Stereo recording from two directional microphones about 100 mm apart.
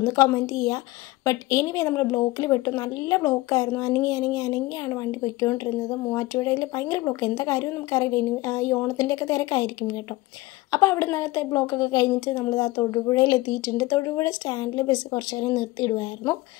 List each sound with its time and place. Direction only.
0.0 s speech: 35° left (ahead or behind)
10.7 s speech: 25° left (ahead or behind)